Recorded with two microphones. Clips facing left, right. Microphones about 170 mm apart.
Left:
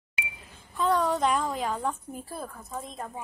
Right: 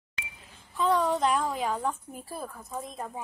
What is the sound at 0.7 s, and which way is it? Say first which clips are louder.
A woman's voice: even; centre (ahead or behind).